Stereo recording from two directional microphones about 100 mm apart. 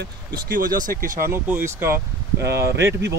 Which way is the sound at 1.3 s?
25° right (ahead or behind).